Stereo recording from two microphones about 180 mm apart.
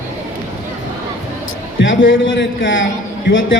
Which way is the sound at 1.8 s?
90° left.